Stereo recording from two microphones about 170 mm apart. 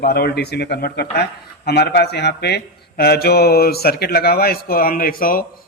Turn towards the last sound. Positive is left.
turn(degrees=55)  # may be behind; listen again after turning